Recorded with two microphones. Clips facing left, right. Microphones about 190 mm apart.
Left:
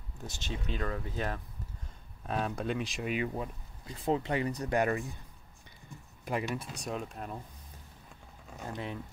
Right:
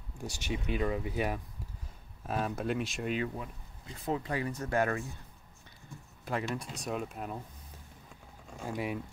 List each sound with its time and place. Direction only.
0.2 s speech: 15° right (ahead or behind); by 3.3 s 5° left (ahead or behind)
4.0 s speech: 25° left (ahead or behind)
6.2 s speech: 15° left (ahead or behind)
6.6 s speech: centre (ahead or behind)
8.5 s speech: 10° right (ahead or behind)